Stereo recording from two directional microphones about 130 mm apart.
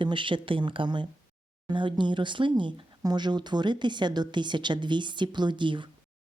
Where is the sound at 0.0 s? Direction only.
40° right (ahead or behind).